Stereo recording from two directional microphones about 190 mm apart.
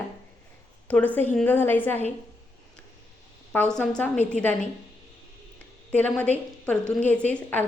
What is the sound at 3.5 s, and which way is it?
A woman's voice, 5° left (ahead or behind).